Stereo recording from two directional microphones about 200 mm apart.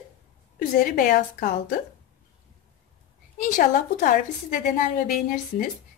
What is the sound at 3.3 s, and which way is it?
A woman's voice, 40° left (ahead or behind).